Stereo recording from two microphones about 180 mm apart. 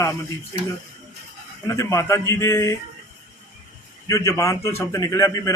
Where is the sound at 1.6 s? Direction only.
20° left (ahead or behind).